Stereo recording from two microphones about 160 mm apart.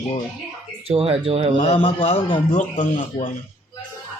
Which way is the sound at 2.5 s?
50° left (ahead or behind).